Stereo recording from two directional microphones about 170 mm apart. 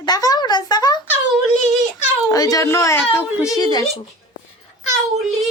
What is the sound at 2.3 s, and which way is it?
Speech, 20° left (ahead or behind).